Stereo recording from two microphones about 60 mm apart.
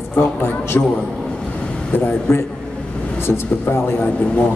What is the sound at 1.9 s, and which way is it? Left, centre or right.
A man's voice, left.